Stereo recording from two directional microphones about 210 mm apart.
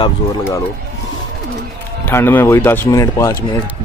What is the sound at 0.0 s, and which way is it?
Speech, 15° left (ahead or behind).